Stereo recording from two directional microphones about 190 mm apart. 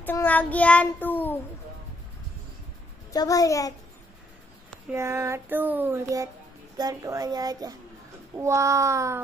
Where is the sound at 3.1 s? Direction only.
20° left (ahead or behind).